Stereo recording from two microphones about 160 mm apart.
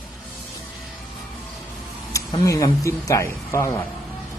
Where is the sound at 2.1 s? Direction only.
20° left (ahead or behind).